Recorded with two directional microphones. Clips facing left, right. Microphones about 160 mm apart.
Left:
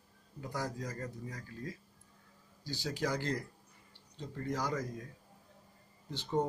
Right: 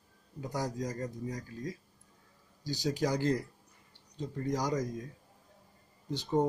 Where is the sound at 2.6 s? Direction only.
40° right (ahead or behind).